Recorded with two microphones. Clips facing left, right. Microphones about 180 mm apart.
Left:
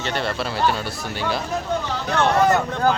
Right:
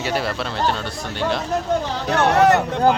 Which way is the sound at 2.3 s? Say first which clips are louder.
Right 3 dB; 70° right (ahead or behind).